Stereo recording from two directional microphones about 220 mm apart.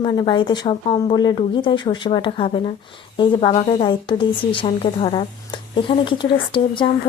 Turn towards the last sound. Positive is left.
turn(degrees=20)  # may be behind; listen again after turning